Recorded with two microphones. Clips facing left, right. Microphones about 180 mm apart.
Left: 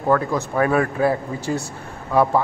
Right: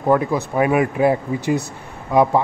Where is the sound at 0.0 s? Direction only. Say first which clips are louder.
Right 2 dB; 15° right (ahead or behind).